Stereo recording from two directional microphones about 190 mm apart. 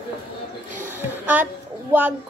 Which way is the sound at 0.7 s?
10° right (ahead or behind).